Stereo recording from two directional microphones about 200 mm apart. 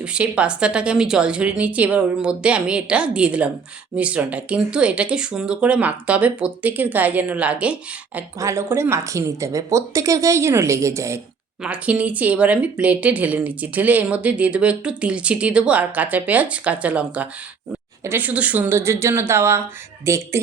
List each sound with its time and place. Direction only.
0.0 s a woman's voice: 5° right (ahead or behind)